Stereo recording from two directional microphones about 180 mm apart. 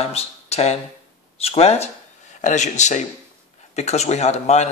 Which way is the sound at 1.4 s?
35° left (ahead or behind).